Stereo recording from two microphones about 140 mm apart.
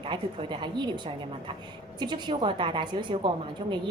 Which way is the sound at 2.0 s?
35° right (ahead or behind).